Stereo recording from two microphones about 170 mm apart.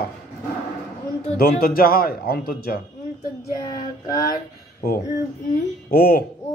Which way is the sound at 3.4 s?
20° left (ahead or behind).